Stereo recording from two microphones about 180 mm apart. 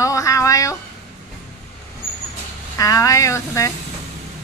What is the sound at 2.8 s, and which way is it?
Speech, 20° left (ahead or behind).